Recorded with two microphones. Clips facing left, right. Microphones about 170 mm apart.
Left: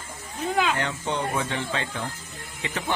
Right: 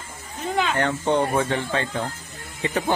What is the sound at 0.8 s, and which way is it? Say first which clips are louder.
A man's voice: right 7 dB; 55° right (ahead or behind).